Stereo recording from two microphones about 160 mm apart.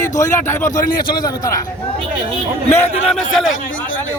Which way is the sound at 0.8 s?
60° left (ahead or behind).